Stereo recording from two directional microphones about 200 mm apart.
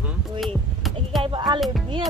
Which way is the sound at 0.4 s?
Centre (ahead or behind).